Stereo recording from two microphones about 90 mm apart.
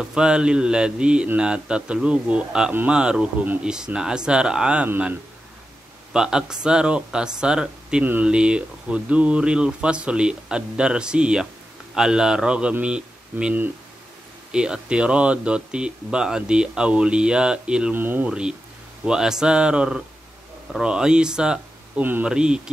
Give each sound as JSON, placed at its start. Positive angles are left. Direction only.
{"t": 0.0, "sound": "speech", "side_deg": -10}
{"t": 6.1, "sound": "speech", "side_deg": -5}
{"t": 17.9, "sound": "speech", "side_deg": -20}
{"t": 19.0, "sound": "speech", "side_deg": -5}